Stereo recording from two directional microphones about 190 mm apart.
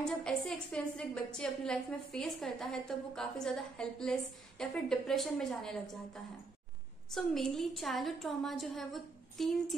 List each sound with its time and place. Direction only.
0.0 s a woman's voice: 5° left (ahead or behind)